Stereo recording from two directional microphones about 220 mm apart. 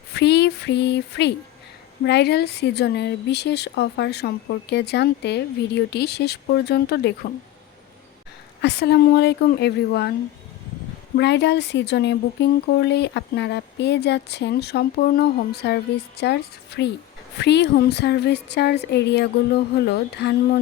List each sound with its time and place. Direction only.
0.1 s a sound: 50° left (ahead or behind)
2.0 s speech: 50° left (ahead or behind)
8.6 s speech: 50° left (ahead or behind)
11.2 s speech: 50° left (ahead or behind)